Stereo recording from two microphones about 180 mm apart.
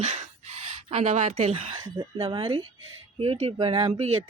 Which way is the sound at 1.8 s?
20° right (ahead or behind).